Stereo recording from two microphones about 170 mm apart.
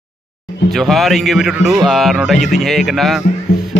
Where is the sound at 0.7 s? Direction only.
Centre (ahead or behind).